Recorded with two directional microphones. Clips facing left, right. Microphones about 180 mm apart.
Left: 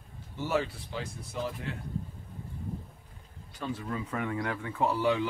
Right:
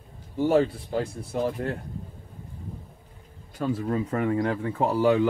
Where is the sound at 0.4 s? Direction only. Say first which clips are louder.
Right 9 dB; 40° right (ahead or behind).